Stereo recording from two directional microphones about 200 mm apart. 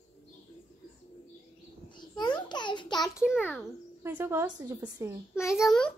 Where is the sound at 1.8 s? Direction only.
20° left (ahead or behind).